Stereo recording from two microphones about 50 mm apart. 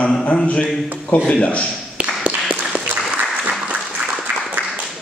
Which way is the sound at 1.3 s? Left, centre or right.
Left.